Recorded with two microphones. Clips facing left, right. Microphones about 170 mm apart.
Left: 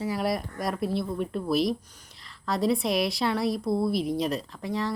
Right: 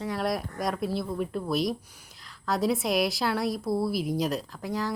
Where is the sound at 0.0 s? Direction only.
5° left (ahead or behind).